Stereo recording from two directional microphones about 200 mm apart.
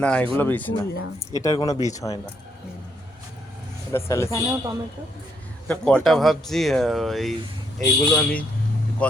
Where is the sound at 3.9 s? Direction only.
15° left (ahead or behind).